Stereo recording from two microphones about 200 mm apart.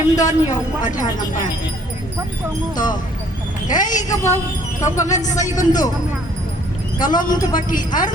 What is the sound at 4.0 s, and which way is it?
Speech, 15° left (ahead or behind).